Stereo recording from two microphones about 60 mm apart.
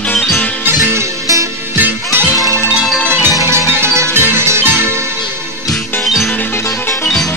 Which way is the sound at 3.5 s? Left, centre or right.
Right.